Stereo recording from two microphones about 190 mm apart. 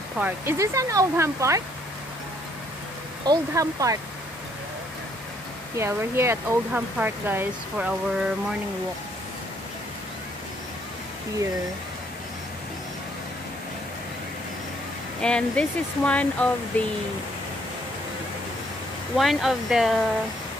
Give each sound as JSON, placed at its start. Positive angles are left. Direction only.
{"t": 0.2, "sound": "speech", "side_deg": -15}
{"t": 3.3, "sound": "speech", "side_deg": -15}
{"t": 5.8, "sound": "speech", "side_deg": -15}
{"t": 15.2, "sound": "speech", "side_deg": 5}
{"t": 19.1, "sound": "speech", "side_deg": 0}